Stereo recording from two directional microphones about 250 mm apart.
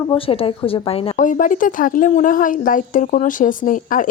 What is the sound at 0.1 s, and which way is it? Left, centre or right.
Speech, left.